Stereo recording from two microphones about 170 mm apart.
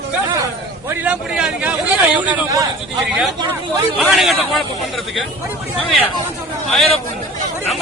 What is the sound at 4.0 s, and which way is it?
Speech, centre (ahead or behind).